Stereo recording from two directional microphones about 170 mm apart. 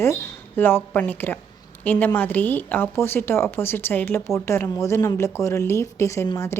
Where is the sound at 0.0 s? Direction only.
15° left (ahead or behind).